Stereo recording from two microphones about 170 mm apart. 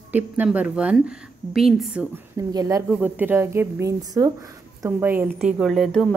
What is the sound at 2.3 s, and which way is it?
Speech, 20° right (ahead or behind).